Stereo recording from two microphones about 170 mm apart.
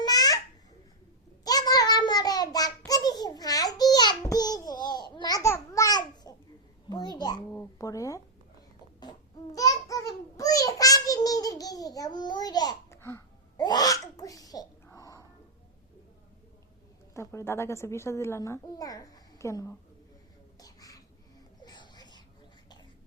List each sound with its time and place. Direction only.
0.0 s babbling: 20° left (ahead or behind)
1.5 s child singing: 20° left (ahead or behind)
6.9 s a sound: 25° left (ahead or behind)
9.6 s child singing: 20° left (ahead or behind)
17.2 s a woman's voice: 15° left (ahead or behind)
20.6 s whispering: 20° left (ahead or behind)
21.6 s wheeze: 25° left (ahead or behind)